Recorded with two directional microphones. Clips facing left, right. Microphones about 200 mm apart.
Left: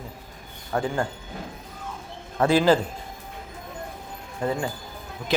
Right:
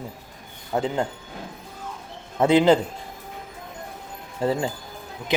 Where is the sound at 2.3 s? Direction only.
20° right (ahead or behind).